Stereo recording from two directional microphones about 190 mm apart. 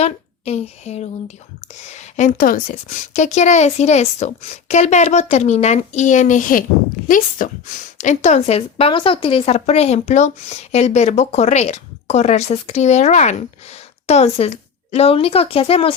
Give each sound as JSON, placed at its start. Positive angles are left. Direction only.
{"t": 0.0, "sound": "a woman's voice", "side_deg": 35}